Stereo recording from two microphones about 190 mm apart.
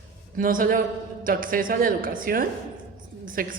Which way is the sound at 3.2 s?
45° right (ahead or behind).